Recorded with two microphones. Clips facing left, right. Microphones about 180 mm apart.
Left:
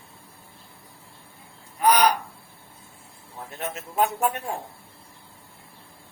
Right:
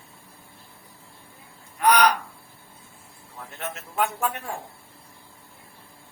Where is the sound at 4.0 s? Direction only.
20° left (ahead or behind).